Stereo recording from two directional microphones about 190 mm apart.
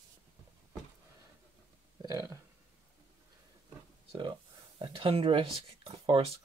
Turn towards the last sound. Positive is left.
turn(degrees=-30)  # may be behind; listen again after turning